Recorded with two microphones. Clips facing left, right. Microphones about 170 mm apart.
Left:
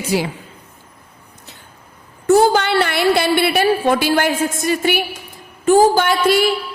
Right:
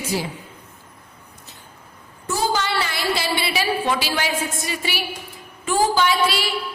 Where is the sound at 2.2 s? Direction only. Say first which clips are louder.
Left 10 dB; 60° left (ahead or behind).